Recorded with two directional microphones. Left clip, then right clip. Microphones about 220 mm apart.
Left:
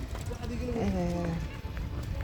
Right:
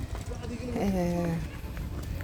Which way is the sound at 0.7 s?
20° right (ahead or behind).